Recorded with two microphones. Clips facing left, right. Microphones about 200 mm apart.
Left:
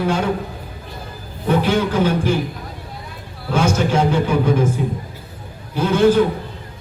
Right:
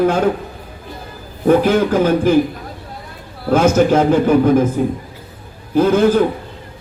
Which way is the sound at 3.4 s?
50° right (ahead or behind).